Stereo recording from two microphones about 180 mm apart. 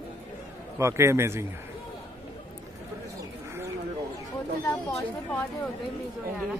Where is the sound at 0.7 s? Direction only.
15° right (ahead or behind).